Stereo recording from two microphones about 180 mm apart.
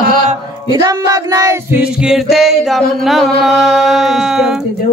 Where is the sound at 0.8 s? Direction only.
20° right (ahead or behind).